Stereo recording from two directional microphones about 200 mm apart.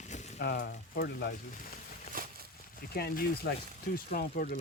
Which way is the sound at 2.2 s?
45° right (ahead or behind).